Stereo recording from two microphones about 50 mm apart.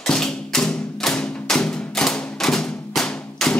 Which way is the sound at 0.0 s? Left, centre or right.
Centre.